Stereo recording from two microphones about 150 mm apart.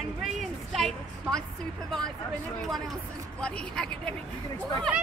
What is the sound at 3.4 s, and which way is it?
Speech, 5° left (ahead or behind).